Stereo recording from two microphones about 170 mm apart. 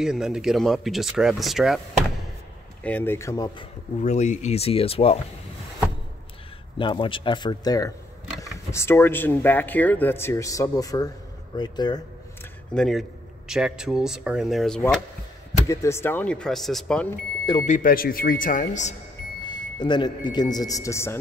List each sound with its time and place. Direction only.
0.0 s speech: 5° right (ahead or behind)
2.8 s speech: 10° left (ahead or behind)
4.0 s speech: 40° left (ahead or behind)
6.8 s speech: 30° left (ahead or behind)
12.7 s speech: centre (ahead or behind)
15.6 s speech: 15° left (ahead or behind)
17.6 s speech: 55° left (ahead or behind)
19.4 s a man's voice: 25° left (ahead or behind)